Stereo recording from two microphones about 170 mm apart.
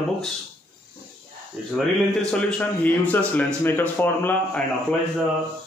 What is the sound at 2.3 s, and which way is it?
Speech, 5° left (ahead or behind).